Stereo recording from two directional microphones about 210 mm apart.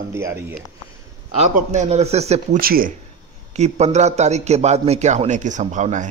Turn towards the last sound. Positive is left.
turn(degrees=-35)  # may be behind; listen again after turning